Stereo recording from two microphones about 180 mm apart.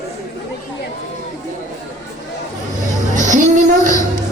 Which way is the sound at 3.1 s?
45° right (ahead or behind).